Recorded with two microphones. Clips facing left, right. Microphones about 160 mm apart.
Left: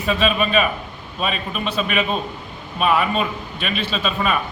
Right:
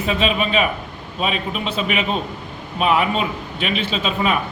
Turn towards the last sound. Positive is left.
turn(degrees=-20)  # may be behind; listen again after turning